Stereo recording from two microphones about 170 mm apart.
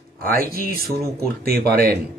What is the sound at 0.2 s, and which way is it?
A man's voice, 60° right (ahead or behind).